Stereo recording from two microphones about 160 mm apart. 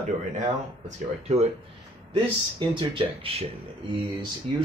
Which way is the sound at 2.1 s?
30° right (ahead or behind).